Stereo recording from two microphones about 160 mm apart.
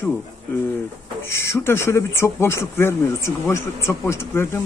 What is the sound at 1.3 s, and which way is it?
Speech, 15° left (ahead or behind).